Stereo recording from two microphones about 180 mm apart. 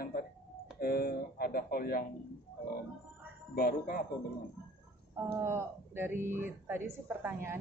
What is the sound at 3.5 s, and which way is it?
Speech, 60° left (ahead or behind).